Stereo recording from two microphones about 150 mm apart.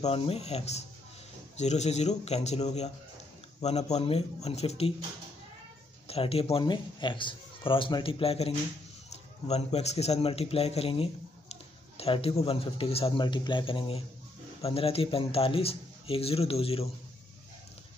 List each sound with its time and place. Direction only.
0.0 s a man's voice: 40° left (ahead or behind)
6.0 s a man's voice: 40° left (ahead or behind)